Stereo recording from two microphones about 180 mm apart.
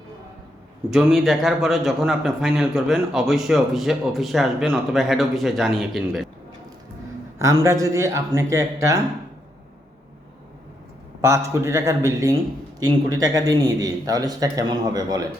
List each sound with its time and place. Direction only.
0.9 s a man's voice: 5° right (ahead or behind)
7.3 s speech: 15° right (ahead or behind)
11.2 s a man's voice: 15° right (ahead or behind)